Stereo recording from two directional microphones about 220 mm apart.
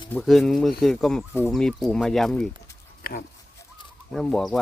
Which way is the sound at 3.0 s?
40° left (ahead or behind).